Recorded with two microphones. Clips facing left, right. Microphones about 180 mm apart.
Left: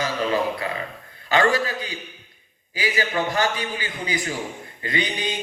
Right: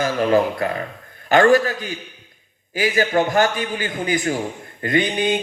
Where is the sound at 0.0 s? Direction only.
50° right (ahead or behind).